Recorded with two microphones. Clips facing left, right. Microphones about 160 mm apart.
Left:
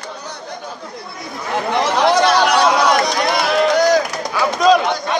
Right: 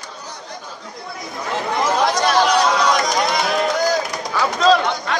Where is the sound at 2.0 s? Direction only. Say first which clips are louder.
Left 4 dB; 70° left (ahead or behind).